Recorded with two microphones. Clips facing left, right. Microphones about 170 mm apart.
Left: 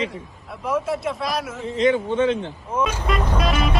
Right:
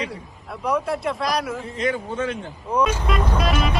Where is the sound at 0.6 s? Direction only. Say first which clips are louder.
Even; centre (ahead or behind).